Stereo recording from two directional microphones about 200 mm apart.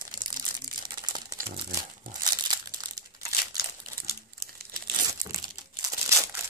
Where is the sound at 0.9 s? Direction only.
20° right (ahead or behind).